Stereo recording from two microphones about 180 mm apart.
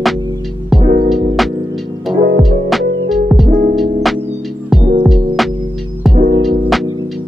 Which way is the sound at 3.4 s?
40° right (ahead or behind).